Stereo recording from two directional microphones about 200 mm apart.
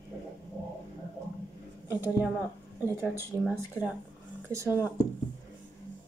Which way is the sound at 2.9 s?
10° right (ahead or behind).